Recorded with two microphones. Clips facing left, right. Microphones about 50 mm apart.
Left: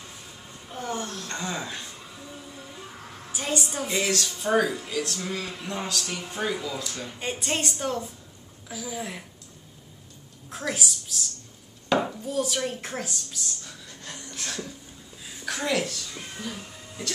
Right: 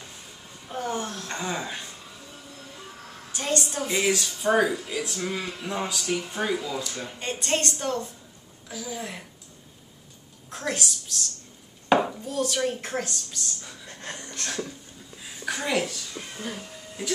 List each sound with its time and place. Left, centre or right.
0.7 s a sound: centre
3.3 s speech: centre
7.2 s speech: centre
10.5 s speech: centre
13.8 s speech: right
14.3 s speech: centre
16.5 s music: centre